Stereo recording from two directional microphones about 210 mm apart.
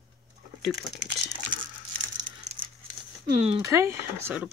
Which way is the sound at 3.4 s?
30° right (ahead or behind).